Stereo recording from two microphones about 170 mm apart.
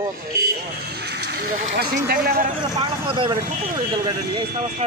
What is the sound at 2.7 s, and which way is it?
Speech, 30° right (ahead or behind).